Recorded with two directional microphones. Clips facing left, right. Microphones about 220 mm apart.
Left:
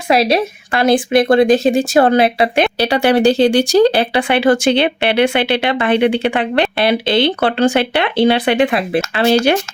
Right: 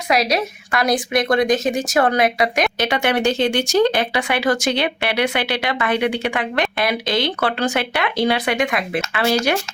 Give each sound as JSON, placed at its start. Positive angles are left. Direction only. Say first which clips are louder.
{"t": 0.1, "sound": "speech", "louder": "left 6 dB", "side_deg": 30}